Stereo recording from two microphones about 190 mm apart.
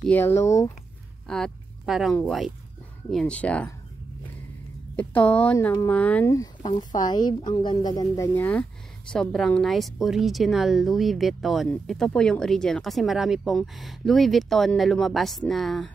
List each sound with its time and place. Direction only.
0.0 s speech: 10° left (ahead or behind)
1.2 s a sound: 5° left (ahead or behind)
2.1 s speech: centre (ahead or behind)
4.9 s speech: 5° left (ahead or behind)
8.4 s speech: 10° left (ahead or behind)